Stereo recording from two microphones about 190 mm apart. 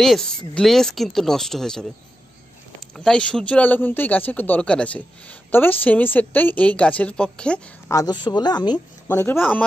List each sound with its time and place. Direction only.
0.0 s speech: centre (ahead or behind)
3.0 s a woman's voice: 5° left (ahead or behind)
7.9 s speech: 20° left (ahead or behind)